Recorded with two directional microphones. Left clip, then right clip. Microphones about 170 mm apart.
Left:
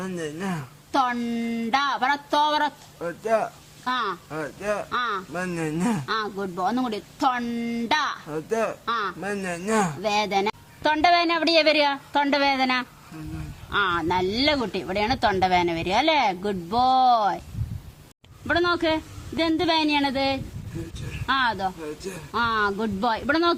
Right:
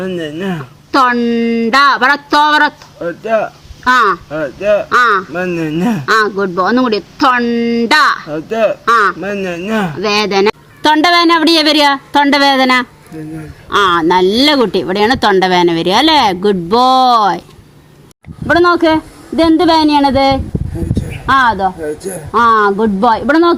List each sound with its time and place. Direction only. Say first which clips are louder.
0.0 s speech: right 12 dB; 5° right (ahead or behind)
0.9 s speech: right 13 dB; 35° right (ahead or behind)
3.0 s speech: right 10 dB; centre (ahead or behind)
3.8 s speech: right 17 dB; 45° right (ahead or behind)
4.3 s speech: right 15 dB; centre (ahead or behind)
4.9 s speech: right 17 dB; 40° right (ahead or behind)
5.3 s speech: right 12 dB; centre (ahead or behind)
6.1 s speech: right 16 dB; 40° right (ahead or behind)
8.3 s speech: right 12 dB; 5° right (ahead or behind)
8.8 s speech: right 17 dB; 45° right (ahead or behind)
9.2 s speech: right 10 dB; centre (ahead or behind)
10.0 s speech: right 11 dB; 40° right (ahead or behind)
18.5 s speech: right 13 dB; 35° right (ahead or behind)